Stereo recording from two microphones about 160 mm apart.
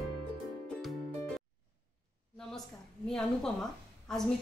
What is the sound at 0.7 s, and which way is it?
Music, centre (ahead or behind).